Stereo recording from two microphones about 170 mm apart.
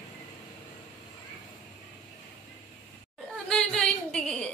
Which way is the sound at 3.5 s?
5° left (ahead or behind).